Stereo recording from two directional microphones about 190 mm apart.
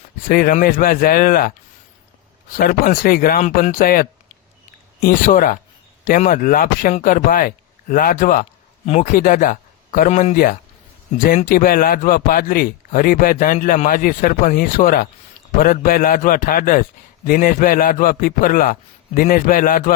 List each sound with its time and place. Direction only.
0.3 s a man's voice: 50° left (ahead or behind)
2.6 s a man's voice: 50° left (ahead or behind)
10.3 s a man's voice: 50° left (ahead or behind)